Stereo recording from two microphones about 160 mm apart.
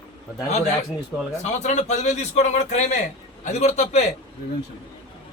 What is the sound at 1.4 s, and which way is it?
A man's voice, 45° left (ahead or behind).